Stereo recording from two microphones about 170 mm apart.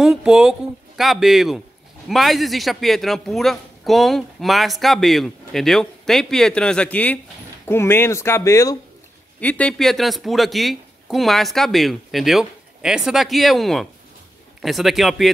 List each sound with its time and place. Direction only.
0.0 s a man's voice: 5° right (ahead or behind)